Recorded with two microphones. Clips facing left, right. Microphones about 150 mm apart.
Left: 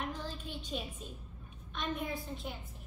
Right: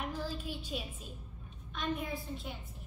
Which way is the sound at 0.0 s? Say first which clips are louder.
Right 2 dB; 10° right (ahead or behind).